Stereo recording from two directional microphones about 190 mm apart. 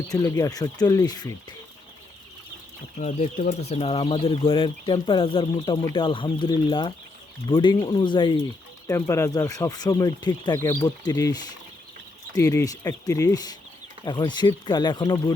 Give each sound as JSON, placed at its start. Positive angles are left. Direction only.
{"t": 0.1, "sound": "speech", "side_deg": 15}
{"t": 3.0, "sound": "speech", "side_deg": 35}